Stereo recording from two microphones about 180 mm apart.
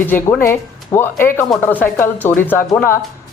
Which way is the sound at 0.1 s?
10° left (ahead or behind).